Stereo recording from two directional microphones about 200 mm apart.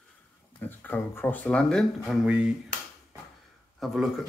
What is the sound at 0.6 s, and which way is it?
Speech, 10° left (ahead or behind).